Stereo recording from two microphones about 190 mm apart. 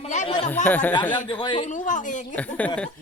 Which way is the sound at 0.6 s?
10° left (ahead or behind).